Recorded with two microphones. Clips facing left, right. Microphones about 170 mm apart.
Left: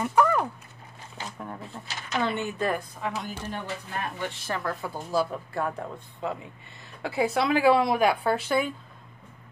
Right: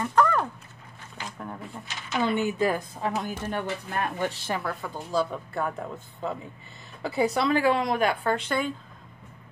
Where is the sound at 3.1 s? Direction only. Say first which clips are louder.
Right 4 dB; 55° right (ahead or behind).